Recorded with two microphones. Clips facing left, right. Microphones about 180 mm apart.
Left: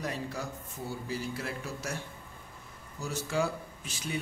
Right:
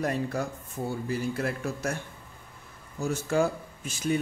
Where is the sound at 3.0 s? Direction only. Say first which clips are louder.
Right 6 dB; 50° right (ahead or behind).